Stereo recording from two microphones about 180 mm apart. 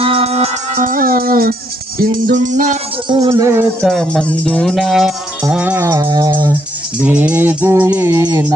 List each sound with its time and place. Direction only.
0.0 s music: 35° right (ahead or behind)
0.9 s music: 50° right (ahead or behind)
3.1 s music: 20° right (ahead or behind)
3.8 s speech: centre (ahead or behind)
5.5 s music: 5° right (ahead or behind)
7.0 s music: 10° right (ahead or behind)